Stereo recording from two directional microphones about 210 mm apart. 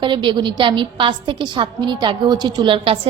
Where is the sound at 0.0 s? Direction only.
20° right (ahead or behind).